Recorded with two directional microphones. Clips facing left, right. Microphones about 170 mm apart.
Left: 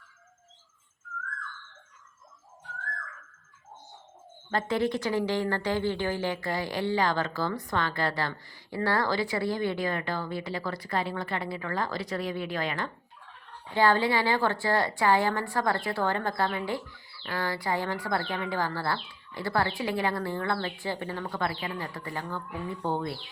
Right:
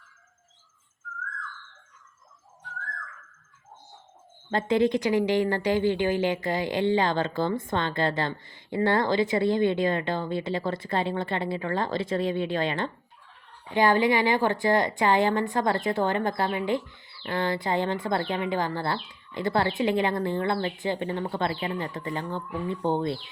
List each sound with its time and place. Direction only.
4.5 s a woman's voice: 20° right (ahead or behind)